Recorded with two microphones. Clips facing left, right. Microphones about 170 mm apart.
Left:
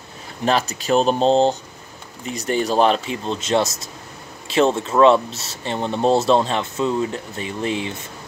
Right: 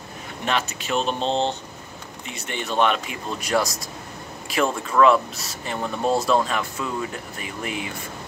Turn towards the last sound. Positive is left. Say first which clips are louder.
# left 6 dB
turn(degrees=30)  # may be behind; listen again after turning